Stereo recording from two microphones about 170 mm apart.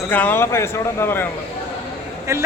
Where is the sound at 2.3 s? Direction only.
15° right (ahead or behind).